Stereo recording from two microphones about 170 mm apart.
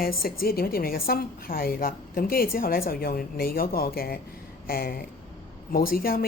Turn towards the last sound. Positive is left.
turn(degrees=60)  # may be behind; listen again after turning